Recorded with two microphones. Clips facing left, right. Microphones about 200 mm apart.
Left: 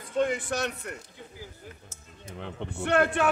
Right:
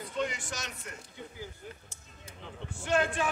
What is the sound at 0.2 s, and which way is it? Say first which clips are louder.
Speech: left 9 dB; 55° left (ahead or behind).